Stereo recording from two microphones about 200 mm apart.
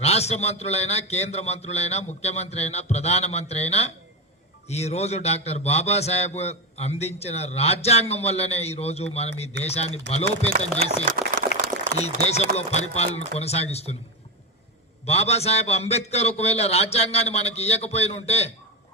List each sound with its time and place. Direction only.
0.0 s a man's voice: 30° left (ahead or behind)
11.2 s a sound: 45° right (ahead or behind)
11.9 s a man's voice: 30° left (ahead or behind)
15.0 s a man's voice: 30° left (ahead or behind)